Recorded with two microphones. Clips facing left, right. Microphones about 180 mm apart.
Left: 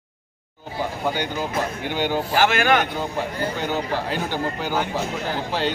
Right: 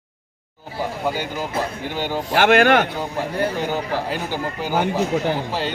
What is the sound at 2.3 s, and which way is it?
Speech, 65° right (ahead or behind).